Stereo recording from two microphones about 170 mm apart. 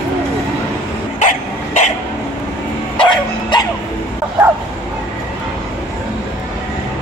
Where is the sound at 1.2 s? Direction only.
45° left (ahead or behind).